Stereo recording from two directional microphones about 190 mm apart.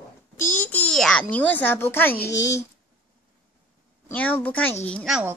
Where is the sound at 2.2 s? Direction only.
70° left (ahead or behind).